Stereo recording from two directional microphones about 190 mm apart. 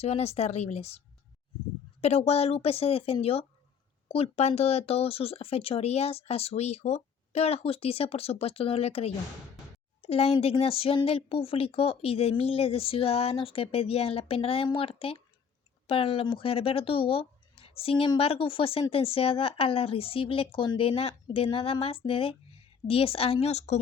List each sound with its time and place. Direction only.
0.0 s speech: 35° left (ahead or behind)